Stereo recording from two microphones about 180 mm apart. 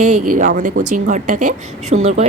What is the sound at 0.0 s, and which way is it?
A woman's voice, 45° right (ahead or behind).